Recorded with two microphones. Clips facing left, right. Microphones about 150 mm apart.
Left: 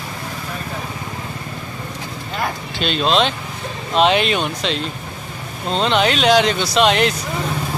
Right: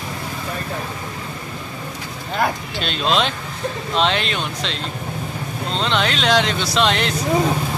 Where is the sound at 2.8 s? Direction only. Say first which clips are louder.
Left 3 dB; centre (ahead or behind).